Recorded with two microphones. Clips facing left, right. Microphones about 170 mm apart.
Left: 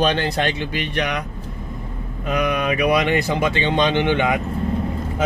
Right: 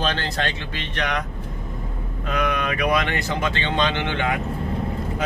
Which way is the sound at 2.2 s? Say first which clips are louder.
Left 3 dB; 10° left (ahead or behind).